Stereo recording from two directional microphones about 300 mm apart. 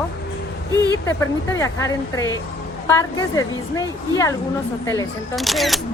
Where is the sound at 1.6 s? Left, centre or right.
Centre.